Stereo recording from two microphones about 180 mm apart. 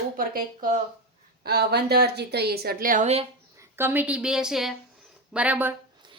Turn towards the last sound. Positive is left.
turn(degrees=-10)  # may be behind; listen again after turning